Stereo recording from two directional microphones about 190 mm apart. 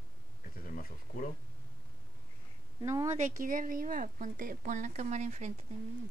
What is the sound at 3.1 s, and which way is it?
Speech, 40° right (ahead or behind).